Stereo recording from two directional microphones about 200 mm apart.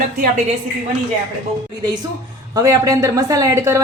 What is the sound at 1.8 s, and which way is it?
A woman's voice, 20° right (ahead or behind).